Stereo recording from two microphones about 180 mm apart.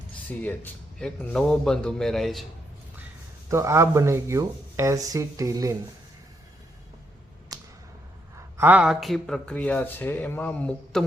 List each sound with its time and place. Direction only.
0.3 s speech: 10° left (ahead or behind)
3.5 s speech: 15° right (ahead or behind)
8.4 s speech: 10° right (ahead or behind); by 11.0 s 5° left (ahead or behind)